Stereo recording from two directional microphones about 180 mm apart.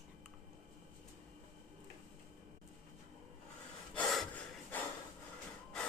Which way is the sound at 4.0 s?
5° left (ahead or behind).